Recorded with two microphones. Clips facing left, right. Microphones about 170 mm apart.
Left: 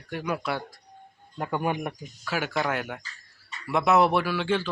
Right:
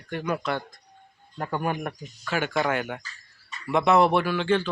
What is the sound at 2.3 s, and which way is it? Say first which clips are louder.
A man's voice: right 2 dB; 5° left (ahead or behind).